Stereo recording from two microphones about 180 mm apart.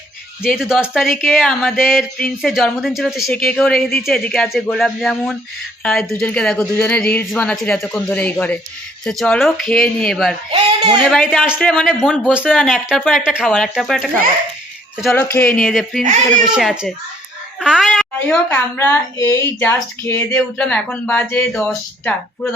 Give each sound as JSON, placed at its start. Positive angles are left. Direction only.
{"t": 0.4, "sound": "speech", "side_deg": -5}
{"t": 15.2, "sound": "speech", "side_deg": 10}
{"t": 17.6, "sound": "a sound", "side_deg": 0}
{"t": 18.4, "sound": "speech", "side_deg": 10}